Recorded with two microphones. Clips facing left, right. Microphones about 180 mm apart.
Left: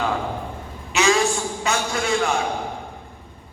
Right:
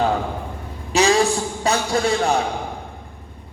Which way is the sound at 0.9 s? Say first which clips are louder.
Right 2 dB; 35° right (ahead or behind).